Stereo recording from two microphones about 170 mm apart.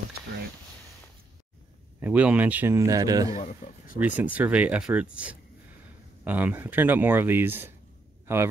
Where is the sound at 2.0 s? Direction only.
10° right (ahead or behind).